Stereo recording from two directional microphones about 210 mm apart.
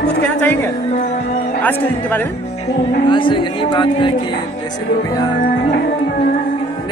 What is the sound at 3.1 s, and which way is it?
Speech, 25° left (ahead or behind).